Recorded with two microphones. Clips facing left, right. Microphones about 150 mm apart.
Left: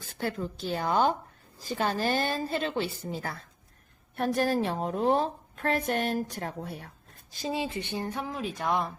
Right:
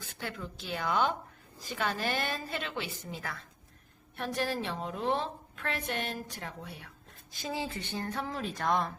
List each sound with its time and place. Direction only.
0.1 s a woman's voice: 40° left (ahead or behind)
4.1 s a woman's voice: 45° left (ahead or behind)
7.5 s a sound: 20° left (ahead or behind)
8.3 s speech: 5° left (ahead or behind)